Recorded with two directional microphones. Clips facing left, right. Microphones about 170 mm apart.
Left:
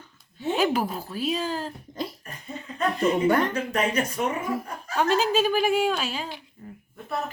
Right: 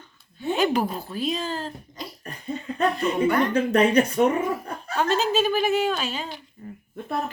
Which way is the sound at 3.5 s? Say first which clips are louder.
Right 7 dB; 35° right (ahead or behind).